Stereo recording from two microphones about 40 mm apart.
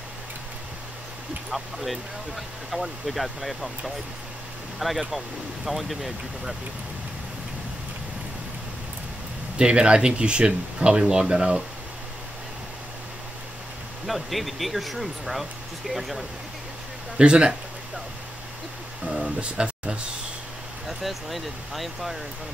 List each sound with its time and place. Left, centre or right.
1.5 s speech: centre
9.6 s speech: right
14.0 s speech: centre
17.2 s speech: right
19.2 s speech: right
20.8 s speech: centre